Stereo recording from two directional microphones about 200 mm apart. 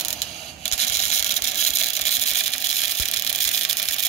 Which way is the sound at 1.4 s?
35° left (ahead or behind).